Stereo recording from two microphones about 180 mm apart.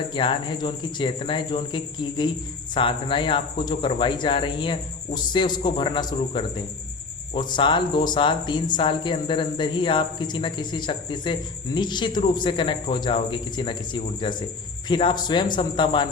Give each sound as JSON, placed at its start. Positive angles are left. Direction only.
{"t": 0.1, "sound": "speech", "side_deg": 25}